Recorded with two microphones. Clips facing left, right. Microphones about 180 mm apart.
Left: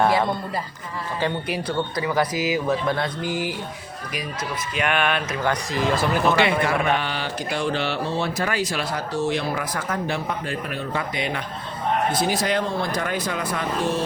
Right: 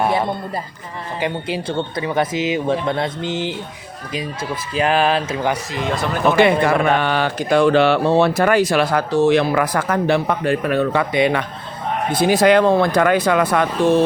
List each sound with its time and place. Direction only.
1.5 s speech: 25° right (ahead or behind)
4.7 s speech: 35° right (ahead or behind)
5.7 s speech: centre (ahead or behind)
6.3 s speech: 50° right (ahead or behind); by 13.9 s 70° right (ahead or behind)